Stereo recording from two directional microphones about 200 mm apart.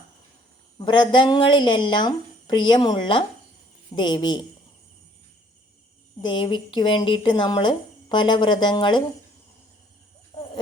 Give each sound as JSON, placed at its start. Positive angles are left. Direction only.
{"t": 0.8, "sound": "speech", "side_deg": 25}
{"t": 6.2, "sound": "speech", "side_deg": 25}
{"t": 10.3, "sound": "a sound", "side_deg": 20}